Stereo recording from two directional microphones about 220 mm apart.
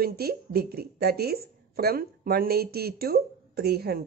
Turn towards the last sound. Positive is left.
turn(degrees=-45)  # may be behind; listen again after turning